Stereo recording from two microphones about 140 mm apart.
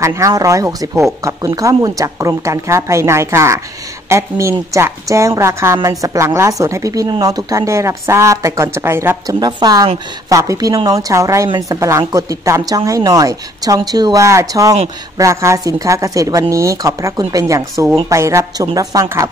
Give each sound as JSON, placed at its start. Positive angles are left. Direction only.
{"t": 0.0, "sound": "a woman's voice", "side_deg": -20}